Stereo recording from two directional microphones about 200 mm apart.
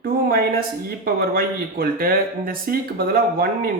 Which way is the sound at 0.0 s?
45° right (ahead or behind).